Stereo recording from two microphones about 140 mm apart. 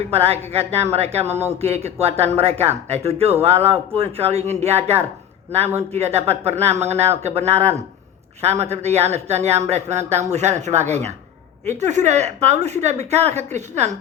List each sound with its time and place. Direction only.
0.1 s a woman's voice: 45° right (ahead or behind)